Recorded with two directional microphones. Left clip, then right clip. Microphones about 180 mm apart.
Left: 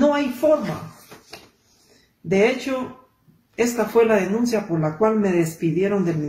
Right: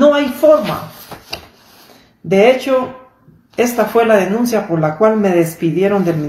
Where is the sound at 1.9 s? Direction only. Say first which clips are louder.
Right 7 dB; 15° left (ahead or behind).